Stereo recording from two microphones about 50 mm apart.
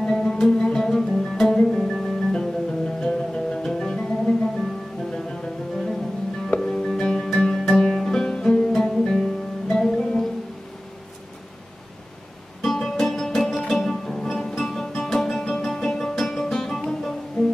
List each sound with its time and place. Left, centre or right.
0.0 s music: centre
12.6 s music: centre